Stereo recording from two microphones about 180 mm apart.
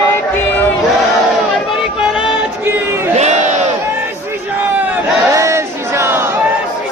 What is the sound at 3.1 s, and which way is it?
Crowd, 40° right (ahead or behind).